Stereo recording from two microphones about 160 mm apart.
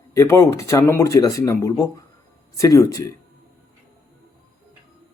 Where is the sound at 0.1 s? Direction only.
15° left (ahead or behind).